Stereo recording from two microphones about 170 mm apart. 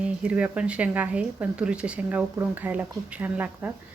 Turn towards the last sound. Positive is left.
turn(degrees=-10)  # may be behind; listen again after turning